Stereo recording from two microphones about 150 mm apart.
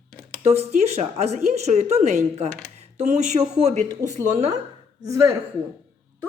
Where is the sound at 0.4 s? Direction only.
45° right (ahead or behind).